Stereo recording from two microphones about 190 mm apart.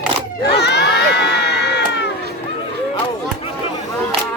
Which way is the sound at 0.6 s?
65° left (ahead or behind).